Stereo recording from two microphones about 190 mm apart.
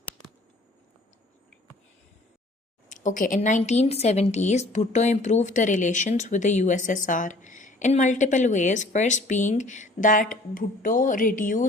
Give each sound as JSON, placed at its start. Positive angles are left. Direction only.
{"t": 2.9, "sound": "a woman's voice", "side_deg": 40}